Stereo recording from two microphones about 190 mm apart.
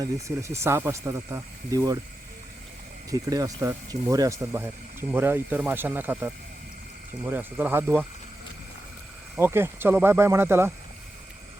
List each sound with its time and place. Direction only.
0.0 s speech: 15° right (ahead or behind)
3.1 s speech: 20° right (ahead or behind)
9.3 s speech: 10° right (ahead or behind)